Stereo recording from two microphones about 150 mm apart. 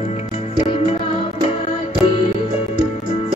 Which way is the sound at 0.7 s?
40° left (ahead or behind).